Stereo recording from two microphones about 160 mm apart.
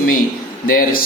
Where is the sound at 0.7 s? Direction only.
65° left (ahead or behind).